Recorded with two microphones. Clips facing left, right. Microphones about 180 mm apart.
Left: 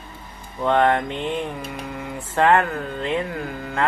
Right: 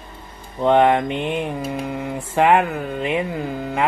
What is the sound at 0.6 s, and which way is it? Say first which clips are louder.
Speech: right 3 dB; 15° right (ahead or behind).